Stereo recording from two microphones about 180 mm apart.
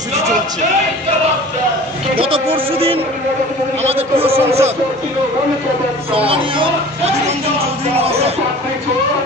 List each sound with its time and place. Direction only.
2.1 s a man's voice: 30° right (ahead or behind)
6.1 s a man's voice: 30° right (ahead or behind)
7.9 s music: 35° right (ahead or behind)